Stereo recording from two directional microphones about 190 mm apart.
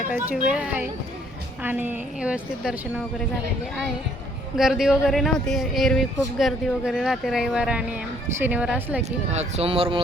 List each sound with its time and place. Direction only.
0.4 s a woman's voice: 5° right (ahead or behind)
4.5 s speech: centre (ahead or behind)
9.0 s speech: 35° right (ahead or behind)